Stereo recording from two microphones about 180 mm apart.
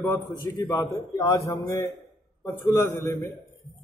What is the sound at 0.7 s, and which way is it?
A man's voice, 15° left (ahead or behind).